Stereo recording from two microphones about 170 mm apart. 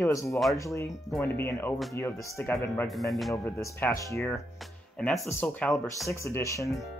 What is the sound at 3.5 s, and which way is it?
Speech, 15° left (ahead or behind).